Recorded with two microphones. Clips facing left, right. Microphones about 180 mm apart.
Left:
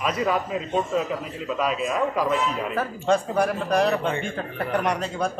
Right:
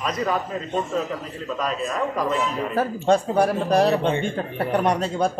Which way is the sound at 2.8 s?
35° right (ahead or behind).